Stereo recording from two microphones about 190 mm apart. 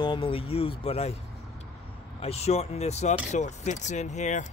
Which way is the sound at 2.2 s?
35° left (ahead or behind).